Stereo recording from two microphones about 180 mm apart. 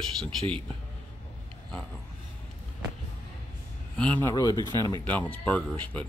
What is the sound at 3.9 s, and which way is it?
A man's voice, 5° left (ahead or behind).